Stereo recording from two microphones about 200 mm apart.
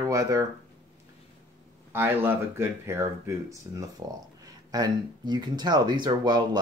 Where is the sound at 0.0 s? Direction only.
15° right (ahead or behind).